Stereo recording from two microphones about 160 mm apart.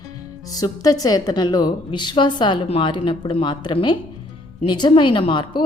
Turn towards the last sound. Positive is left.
turn(degrees=30)  # may be behind; listen again after turning